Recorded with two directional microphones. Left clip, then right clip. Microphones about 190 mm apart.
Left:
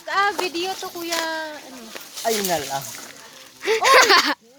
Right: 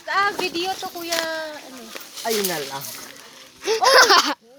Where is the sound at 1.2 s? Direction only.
Centre (ahead or behind).